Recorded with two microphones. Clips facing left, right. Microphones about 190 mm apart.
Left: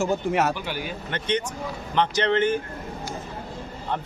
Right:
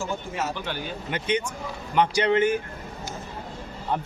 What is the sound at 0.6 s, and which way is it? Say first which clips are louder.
Speech: left 1 dB; 10° left (ahead or behind).